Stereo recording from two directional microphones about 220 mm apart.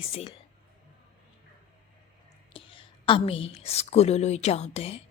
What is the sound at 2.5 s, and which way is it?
A woman's voice, 25° left (ahead or behind).